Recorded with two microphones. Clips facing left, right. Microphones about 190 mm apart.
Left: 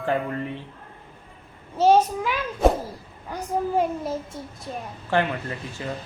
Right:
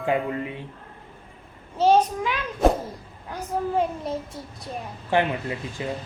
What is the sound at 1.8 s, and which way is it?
A child's voice, 10° left (ahead or behind).